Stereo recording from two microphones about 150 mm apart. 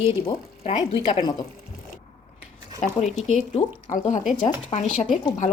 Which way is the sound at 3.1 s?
50° left (ahead or behind).